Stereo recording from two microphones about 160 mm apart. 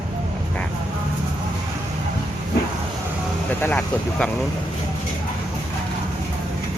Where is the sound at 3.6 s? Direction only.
5° left (ahead or behind).